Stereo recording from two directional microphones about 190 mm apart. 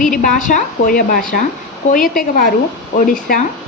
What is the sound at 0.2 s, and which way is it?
A woman's voice, 45° left (ahead or behind).